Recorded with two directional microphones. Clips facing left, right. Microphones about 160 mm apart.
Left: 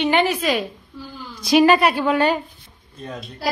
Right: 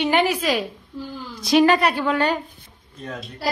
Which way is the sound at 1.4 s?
10° left (ahead or behind).